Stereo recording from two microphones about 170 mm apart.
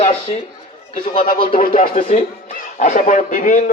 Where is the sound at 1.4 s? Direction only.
50° left (ahead or behind).